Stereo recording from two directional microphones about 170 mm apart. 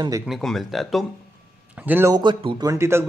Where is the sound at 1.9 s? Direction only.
15° right (ahead or behind).